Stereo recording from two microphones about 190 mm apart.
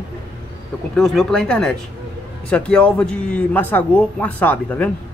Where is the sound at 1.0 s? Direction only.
Centre (ahead or behind).